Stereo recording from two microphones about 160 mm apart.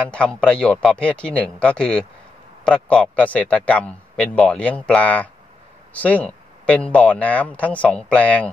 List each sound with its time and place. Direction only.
0.1 s a man's voice: 5° left (ahead or behind)